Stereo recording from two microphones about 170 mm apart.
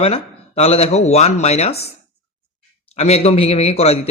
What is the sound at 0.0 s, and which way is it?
Speech, 35° left (ahead or behind).